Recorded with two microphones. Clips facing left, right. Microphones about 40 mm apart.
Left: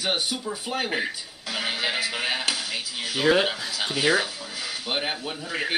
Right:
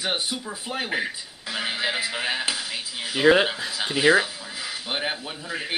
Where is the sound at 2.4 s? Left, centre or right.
Centre.